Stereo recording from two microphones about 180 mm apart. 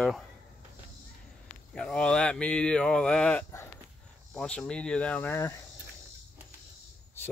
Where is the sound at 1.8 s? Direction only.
5° left (ahead or behind).